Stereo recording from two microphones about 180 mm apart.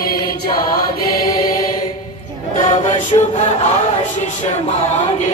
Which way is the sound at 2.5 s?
45° left (ahead or behind).